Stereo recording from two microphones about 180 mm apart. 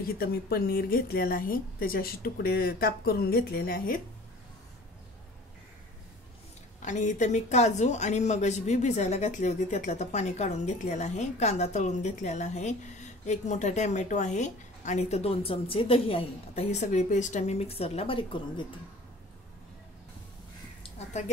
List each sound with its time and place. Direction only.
0.2 s a woman's voice: 60° left (ahead or behind)
6.8 s a woman's voice: 45° left (ahead or behind)